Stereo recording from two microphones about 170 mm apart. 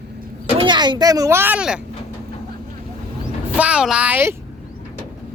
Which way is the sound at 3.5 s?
5° right (ahead or behind).